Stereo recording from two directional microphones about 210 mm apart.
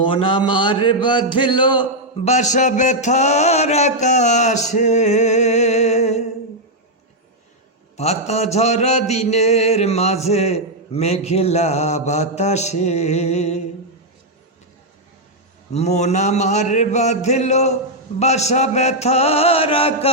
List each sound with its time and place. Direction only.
0.0 s mantra: 25° left (ahead or behind)
7.9 s a man's voice: 30° left (ahead or behind)
8.3 s mantra: 30° left (ahead or behind)
15.7 s mantra: 30° left (ahead or behind)